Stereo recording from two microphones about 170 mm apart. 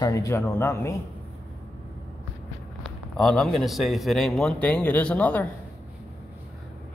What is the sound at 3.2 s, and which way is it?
Speech, centre (ahead or behind).